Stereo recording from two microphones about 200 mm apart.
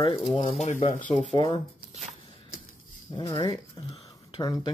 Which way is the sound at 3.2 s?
20° left (ahead or behind).